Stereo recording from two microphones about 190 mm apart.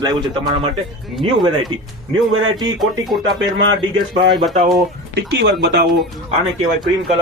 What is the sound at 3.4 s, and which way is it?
Speech, 75° right (ahead or behind).